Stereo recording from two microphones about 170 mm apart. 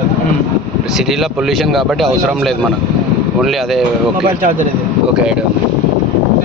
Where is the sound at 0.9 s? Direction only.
Centre (ahead or behind).